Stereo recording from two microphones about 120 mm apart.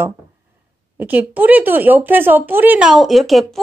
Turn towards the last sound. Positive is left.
turn(degrees=0)  # may be behind; listen again after turning